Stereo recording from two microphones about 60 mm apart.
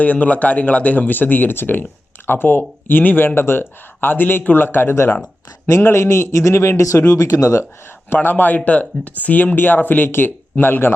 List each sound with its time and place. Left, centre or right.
0.0 s a man's voice: left
8.1 s speech: left